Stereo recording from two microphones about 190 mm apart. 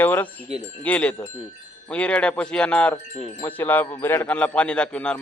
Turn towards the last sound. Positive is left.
turn(degrees=5)  # may be behind; listen again after turning